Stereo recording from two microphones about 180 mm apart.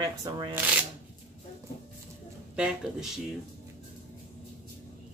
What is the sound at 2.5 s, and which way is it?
Speech, 5° right (ahead or behind).